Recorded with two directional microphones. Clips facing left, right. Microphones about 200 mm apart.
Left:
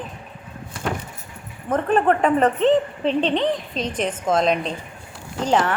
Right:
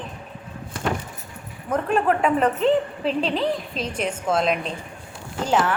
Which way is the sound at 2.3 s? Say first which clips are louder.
Left 2 dB; 5° right (ahead or behind).